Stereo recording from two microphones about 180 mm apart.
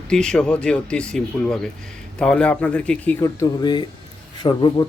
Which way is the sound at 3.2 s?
20° left (ahead or behind).